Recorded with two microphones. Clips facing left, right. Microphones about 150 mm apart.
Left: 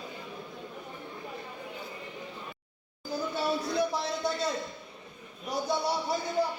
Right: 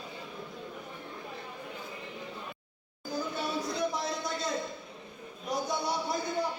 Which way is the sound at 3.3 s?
30° left (ahead or behind).